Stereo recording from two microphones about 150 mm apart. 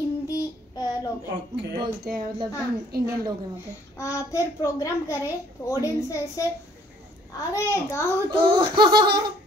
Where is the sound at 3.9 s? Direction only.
20° left (ahead or behind).